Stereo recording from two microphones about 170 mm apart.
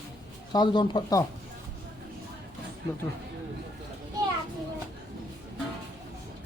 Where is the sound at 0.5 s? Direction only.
25° left (ahead or behind).